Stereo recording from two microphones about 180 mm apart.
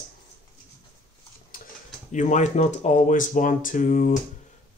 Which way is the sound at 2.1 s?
40° left (ahead or behind).